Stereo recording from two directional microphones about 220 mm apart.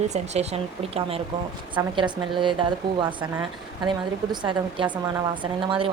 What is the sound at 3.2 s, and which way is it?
Speech, 10° right (ahead or behind).